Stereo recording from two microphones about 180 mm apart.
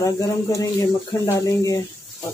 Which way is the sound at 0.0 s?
15° left (ahead or behind).